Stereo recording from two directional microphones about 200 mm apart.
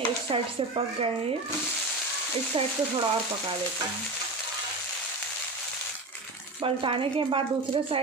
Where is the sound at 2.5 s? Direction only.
25° right (ahead or behind).